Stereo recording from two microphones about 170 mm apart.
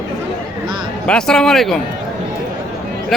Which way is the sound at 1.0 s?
5° left (ahead or behind).